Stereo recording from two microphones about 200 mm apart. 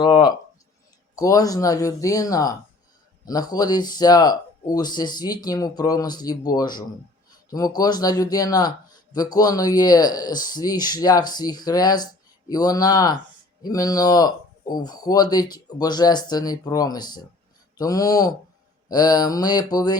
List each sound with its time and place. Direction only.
0.0 s speech: 20° left (ahead or behind)